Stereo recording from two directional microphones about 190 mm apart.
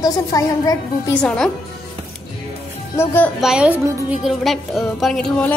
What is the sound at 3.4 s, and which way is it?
A woman's voice, 5° right (ahead or behind).